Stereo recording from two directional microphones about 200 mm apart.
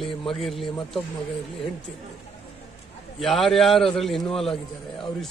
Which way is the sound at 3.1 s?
Centre (ahead or behind).